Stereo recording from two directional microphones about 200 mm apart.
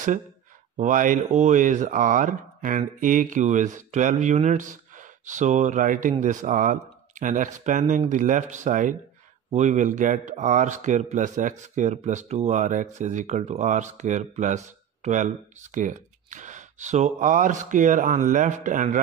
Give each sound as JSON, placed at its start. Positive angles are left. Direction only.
{"t": 0.7, "sound": "speech", "side_deg": -40}